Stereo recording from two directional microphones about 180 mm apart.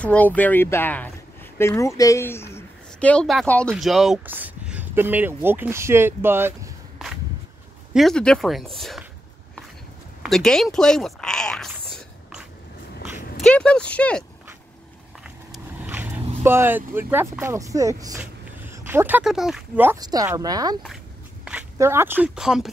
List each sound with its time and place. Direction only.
0.0 s speech: 10° left (ahead or behind); by 6.7 s 10° right (ahead or behind)
7.9 s speech: centre (ahead or behind)
10.2 s speech: 5° left (ahead or behind)
11.9 s a sound: 5° right (ahead or behind)
13.4 s speech: 5° left (ahead or behind)
15.5 s speech: 10° right (ahead or behind)
20.0 s speech: 20° right (ahead or behind); by 22.7 s 5° right (ahead or behind)